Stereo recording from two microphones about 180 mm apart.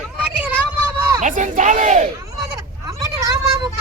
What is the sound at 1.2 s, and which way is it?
Speech, 45° right (ahead or behind).